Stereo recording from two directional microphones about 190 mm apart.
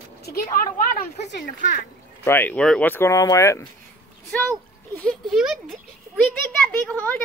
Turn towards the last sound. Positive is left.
turn(degrees=10)  # may be behind; listen again after turning